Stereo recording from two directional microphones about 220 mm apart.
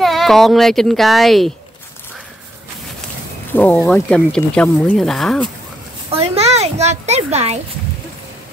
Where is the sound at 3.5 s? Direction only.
5° left (ahead or behind).